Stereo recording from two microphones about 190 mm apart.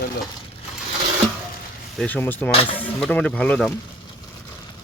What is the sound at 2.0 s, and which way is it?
Speech, 10° left (ahead or behind).